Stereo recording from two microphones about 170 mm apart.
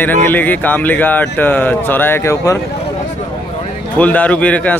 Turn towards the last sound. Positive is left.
turn(degrees=10)  # may be behind; listen again after turning